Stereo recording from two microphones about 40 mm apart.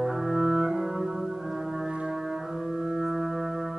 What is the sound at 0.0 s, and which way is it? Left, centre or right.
Music, centre.